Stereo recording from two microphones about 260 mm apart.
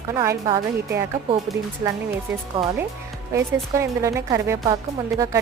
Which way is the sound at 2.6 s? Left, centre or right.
Right.